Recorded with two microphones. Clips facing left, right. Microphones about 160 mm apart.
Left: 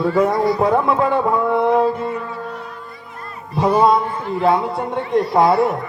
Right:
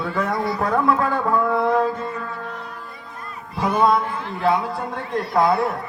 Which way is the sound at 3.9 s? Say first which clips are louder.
Left 3 dB; 25° left (ahead or behind).